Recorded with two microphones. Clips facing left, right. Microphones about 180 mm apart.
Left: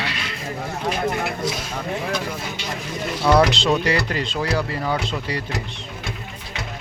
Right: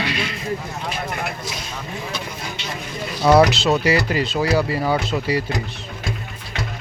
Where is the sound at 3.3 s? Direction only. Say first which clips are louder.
Right 2 dB; 5° right (ahead or behind).